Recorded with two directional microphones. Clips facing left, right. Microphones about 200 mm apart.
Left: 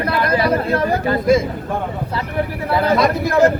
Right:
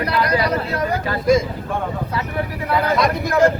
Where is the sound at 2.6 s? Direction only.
30° left (ahead or behind).